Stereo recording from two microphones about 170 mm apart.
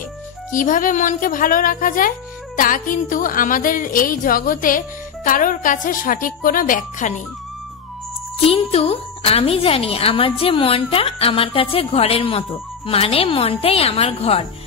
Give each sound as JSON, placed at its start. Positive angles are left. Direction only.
{"t": 0.5, "sound": "a woman's voice", "side_deg": 50}
{"t": 8.5, "sound": "speech", "side_deg": 35}